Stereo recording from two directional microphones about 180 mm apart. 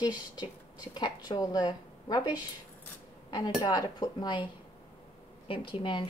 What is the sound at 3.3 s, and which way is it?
Speech, 25° left (ahead or behind).